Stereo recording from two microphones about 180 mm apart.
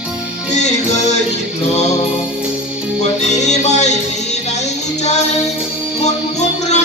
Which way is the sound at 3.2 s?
40° left (ahead or behind).